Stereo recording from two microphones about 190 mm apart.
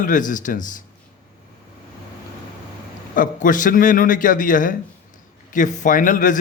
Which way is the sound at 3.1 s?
45° left (ahead or behind).